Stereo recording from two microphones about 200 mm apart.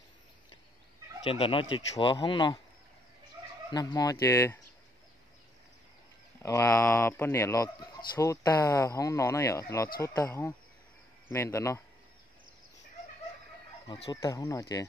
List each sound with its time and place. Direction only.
1.2 s speech: 25° left (ahead or behind)
3.7 s speech: 20° left (ahead or behind)
6.4 s speech: 15° left (ahead or behind)
13.8 s speech: 25° left (ahead or behind)